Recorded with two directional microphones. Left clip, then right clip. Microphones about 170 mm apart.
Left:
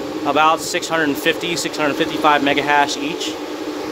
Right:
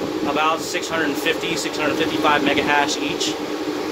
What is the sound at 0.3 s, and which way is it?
Speech, 40° left (ahead or behind).